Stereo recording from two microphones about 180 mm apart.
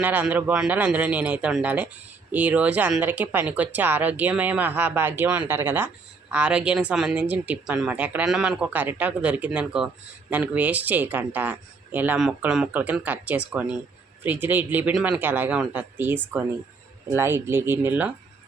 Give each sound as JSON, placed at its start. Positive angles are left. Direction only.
{"t": 0.0, "sound": "a woman's voice", "side_deg": -10}